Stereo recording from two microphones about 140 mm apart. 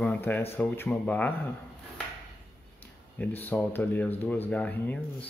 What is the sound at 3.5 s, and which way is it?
Speech, 15° left (ahead or behind).